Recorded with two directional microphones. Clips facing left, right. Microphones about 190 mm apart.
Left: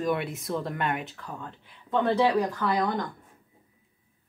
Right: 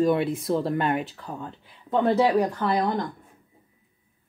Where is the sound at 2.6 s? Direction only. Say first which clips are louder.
Right 2 dB; 30° right (ahead or behind).